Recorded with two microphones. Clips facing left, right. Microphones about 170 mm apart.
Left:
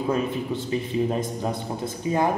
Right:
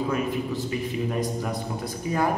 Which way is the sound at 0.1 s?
30° left (ahead or behind).